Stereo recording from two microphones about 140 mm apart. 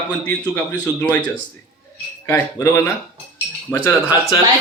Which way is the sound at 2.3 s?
15° left (ahead or behind).